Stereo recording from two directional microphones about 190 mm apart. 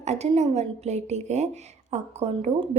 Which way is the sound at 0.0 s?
35° right (ahead or behind).